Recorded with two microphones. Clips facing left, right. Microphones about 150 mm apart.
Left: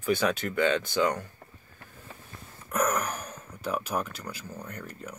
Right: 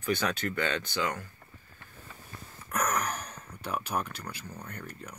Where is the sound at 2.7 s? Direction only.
5° left (ahead or behind).